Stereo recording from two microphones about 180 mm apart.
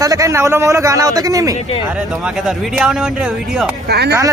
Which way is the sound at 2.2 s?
5° right (ahead or behind).